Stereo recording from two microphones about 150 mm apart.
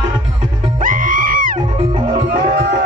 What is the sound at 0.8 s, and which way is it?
Music, 65° right (ahead or behind).